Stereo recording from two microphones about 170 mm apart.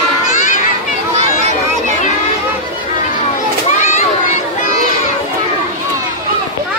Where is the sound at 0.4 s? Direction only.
50° left (ahead or behind).